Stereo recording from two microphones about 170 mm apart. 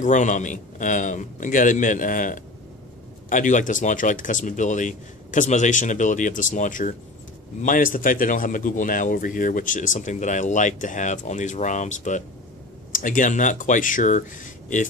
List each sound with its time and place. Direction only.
0.0 s speech: 45° left (ahead or behind)